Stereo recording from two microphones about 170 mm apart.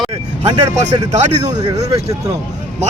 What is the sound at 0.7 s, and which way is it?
Speech, 40° right (ahead or behind).